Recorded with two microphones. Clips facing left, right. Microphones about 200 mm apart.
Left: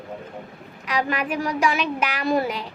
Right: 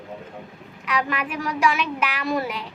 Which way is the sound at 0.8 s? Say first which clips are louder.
Left 1 dB; 40° left (ahead or behind).